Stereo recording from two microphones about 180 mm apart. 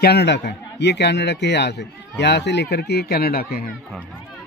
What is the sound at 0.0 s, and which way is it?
A man's voice, 65° left (ahead or behind).